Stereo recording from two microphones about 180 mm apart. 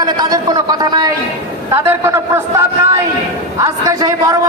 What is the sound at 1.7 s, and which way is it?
Speech, 15° right (ahead or behind).